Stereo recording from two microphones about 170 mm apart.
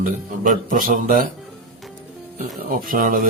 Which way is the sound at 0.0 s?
50° right (ahead or behind).